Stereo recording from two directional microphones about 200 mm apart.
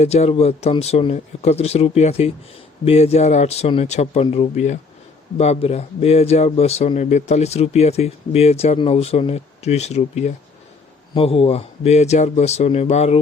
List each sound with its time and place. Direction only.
0.0 s speech: 30° left (ahead or behind)